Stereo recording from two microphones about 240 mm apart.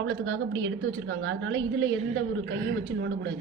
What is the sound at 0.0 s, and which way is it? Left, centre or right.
A woman's voice, right.